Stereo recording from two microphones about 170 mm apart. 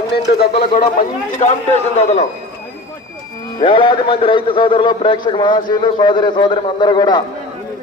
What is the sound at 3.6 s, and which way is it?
A man's voice, 30° left (ahead or behind).